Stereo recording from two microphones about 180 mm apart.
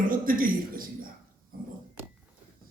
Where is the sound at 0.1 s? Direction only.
50° right (ahead or behind).